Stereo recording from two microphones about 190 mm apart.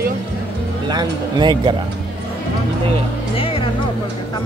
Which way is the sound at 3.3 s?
30° left (ahead or behind).